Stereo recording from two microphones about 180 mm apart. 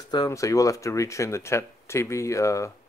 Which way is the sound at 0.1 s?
20° left (ahead or behind).